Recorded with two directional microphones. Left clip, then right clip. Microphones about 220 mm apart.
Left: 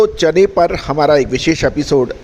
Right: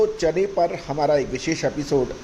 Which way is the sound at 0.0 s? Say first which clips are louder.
Left 9 dB; 45° left (ahead or behind).